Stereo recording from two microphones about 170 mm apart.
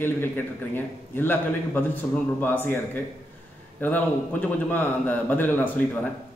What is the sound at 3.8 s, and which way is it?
A man's voice, 10° left (ahead or behind).